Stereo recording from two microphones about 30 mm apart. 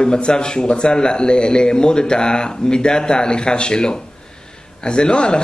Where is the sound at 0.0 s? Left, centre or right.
Left.